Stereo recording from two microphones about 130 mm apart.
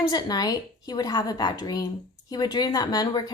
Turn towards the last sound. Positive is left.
turn(degrees=30)  # may be behind; listen again after turning